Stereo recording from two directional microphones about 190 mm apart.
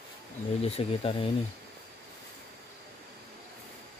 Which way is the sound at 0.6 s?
30° left (ahead or behind).